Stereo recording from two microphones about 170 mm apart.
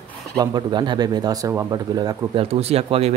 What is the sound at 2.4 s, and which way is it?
Speech, 35° right (ahead or behind).